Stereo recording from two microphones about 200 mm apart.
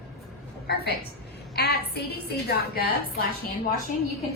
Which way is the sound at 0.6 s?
50° left (ahead or behind).